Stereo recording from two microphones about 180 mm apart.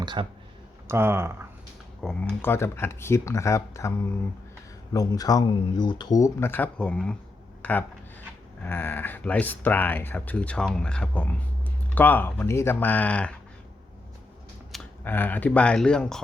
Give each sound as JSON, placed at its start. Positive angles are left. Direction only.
{"t": 0.0, "sound": "speech", "side_deg": -25}
{"t": 0.9, "sound": "speech", "side_deg": -15}
{"t": 2.0, "sound": "speech", "side_deg": 0}
{"t": 2.4, "sound": "speech", "side_deg": 15}
{"t": 15.0, "sound": "speech", "side_deg": 10}